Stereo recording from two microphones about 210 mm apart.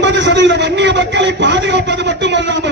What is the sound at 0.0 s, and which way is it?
A man's voice, 55° right (ahead or behind).